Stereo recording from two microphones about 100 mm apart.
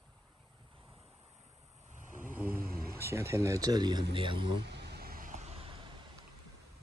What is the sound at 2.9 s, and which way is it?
Speech, 25° right (ahead or behind).